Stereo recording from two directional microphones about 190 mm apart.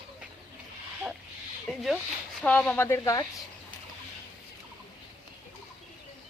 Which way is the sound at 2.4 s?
5° left (ahead or behind).